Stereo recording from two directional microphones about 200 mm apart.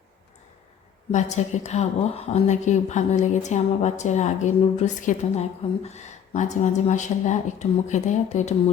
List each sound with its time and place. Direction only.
1.1 s a woman's voice: 35° left (ahead or behind)